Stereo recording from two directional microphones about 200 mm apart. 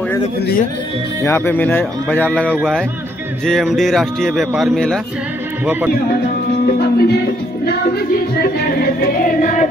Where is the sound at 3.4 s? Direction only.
Centre (ahead or behind).